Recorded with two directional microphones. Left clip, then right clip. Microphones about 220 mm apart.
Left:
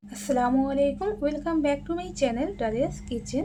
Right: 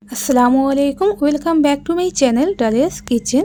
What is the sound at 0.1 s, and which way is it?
Speech, 45° right (ahead or behind).